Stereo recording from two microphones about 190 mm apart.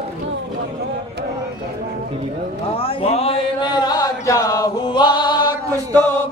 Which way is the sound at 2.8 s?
30° left (ahead or behind).